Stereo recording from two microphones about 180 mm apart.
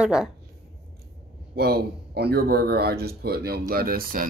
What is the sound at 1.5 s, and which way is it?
Speech, 60° right (ahead or behind).